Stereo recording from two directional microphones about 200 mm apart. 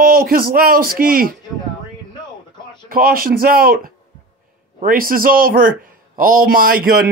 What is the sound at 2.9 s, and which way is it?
A man's voice, 45° right (ahead or behind).